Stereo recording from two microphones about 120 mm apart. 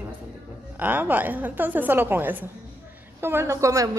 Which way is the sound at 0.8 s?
15° right (ahead or behind).